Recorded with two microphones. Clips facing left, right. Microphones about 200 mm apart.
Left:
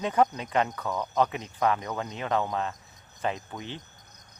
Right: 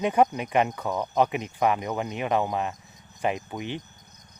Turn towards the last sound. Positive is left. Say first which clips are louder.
# right 6 dB
turn(degrees=-15)  # may be behind; listen again after turning